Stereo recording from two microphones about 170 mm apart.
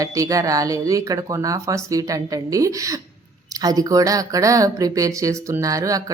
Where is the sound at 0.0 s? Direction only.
20° right (ahead or behind).